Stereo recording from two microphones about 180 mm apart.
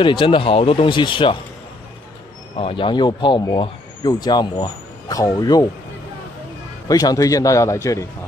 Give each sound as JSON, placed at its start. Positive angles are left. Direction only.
{"t": 0.0, "sound": "speech", "side_deg": 25}
{"t": 2.5, "sound": "speech", "side_deg": 30}
{"t": 6.9, "sound": "speech", "side_deg": 20}